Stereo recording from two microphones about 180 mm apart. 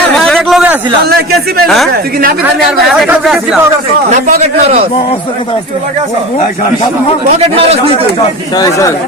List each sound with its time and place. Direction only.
0.2 s a sound: centre (ahead or behind)
1.6 s speech: centre (ahead or behind)
2.9 s speech: centre (ahead or behind)
4.3 s a man's voice: 35° right (ahead or behind)
7.3 s a man's voice: 35° right (ahead or behind)
8.5 s speech: 20° left (ahead or behind)